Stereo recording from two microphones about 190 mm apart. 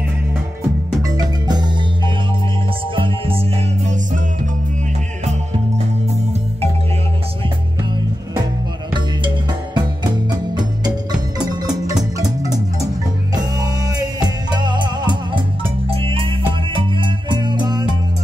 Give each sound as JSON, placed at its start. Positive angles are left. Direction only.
{"t": 1.0, "sound": "music", "side_deg": -20}
{"t": 9.8, "sound": "music", "side_deg": -20}